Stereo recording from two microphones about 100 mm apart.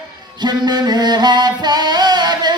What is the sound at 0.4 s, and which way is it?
Music, 45° right (ahead or behind).